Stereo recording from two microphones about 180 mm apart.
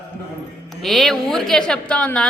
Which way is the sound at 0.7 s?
Centre (ahead or behind).